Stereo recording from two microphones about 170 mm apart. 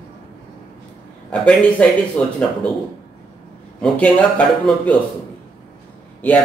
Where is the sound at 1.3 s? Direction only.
5° left (ahead or behind).